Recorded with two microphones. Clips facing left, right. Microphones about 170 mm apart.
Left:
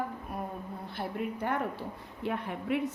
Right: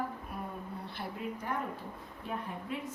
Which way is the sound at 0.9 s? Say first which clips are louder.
Left 6 dB; 65° left (ahead or behind).